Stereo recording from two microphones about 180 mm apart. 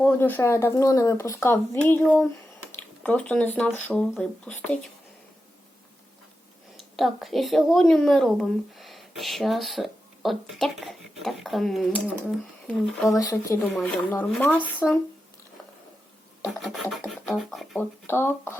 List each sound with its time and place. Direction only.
0.0 s speech: 10° left (ahead or behind)
6.7 s a woman's voice: centre (ahead or behind)
13.1 s speech: 20° left (ahead or behind)
14.8 s speech: 5° right (ahead or behind)
16.4 s speech: centre (ahead or behind)
18.0 s speech: 10° left (ahead or behind)